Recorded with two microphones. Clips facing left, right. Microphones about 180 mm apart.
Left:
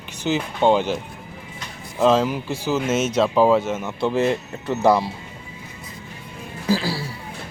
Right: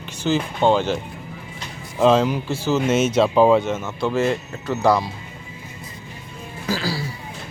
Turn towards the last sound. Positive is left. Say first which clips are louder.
# left 3 dB
turn(degrees=25)  # may be behind; listen again after turning